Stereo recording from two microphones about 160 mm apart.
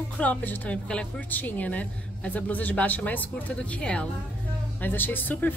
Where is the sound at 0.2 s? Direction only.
10° left (ahead or behind).